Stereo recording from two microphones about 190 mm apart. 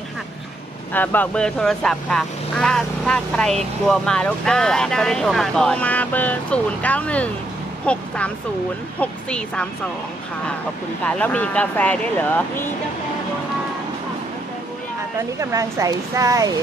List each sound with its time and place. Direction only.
0.9 s speech: 10° left (ahead or behind)
11.1 s speech: 10° left (ahead or behind)
15.3 s speech: 15° right (ahead or behind)